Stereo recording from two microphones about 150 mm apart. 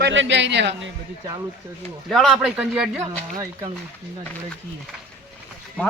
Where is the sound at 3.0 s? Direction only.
25° right (ahead or behind).